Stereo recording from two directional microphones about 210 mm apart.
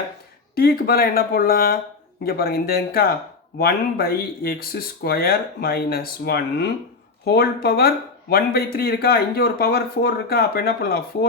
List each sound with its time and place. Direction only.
0.5 s speech: 45° left (ahead or behind)